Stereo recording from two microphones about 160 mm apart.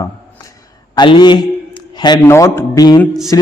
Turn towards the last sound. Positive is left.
turn(degrees=20)  # may be behind; listen again after turning